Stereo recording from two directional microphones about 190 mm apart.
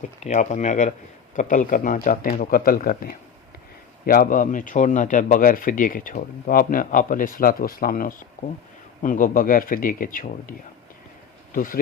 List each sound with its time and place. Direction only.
0.2 s speech: 35° left (ahead or behind)
11.5 s speech: 45° left (ahead or behind)